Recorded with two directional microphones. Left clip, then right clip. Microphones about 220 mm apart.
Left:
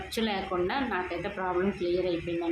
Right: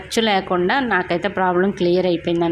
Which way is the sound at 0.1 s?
40° right (ahead or behind).